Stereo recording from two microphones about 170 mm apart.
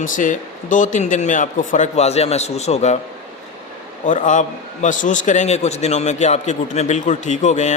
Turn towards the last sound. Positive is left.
turn(degrees=45)  # may be behind; listen again after turning